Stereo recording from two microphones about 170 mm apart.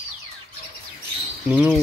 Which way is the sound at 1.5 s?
5° right (ahead or behind).